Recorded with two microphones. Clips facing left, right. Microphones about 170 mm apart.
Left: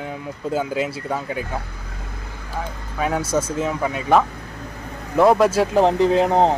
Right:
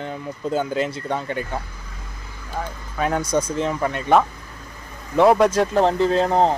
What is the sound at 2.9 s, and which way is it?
Speech, 5° left (ahead or behind).